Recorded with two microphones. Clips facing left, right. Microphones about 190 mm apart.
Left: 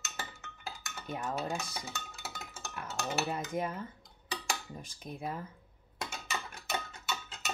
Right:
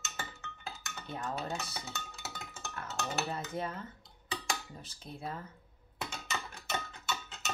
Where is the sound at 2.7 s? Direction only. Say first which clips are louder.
Left 2 dB; 10° left (ahead or behind).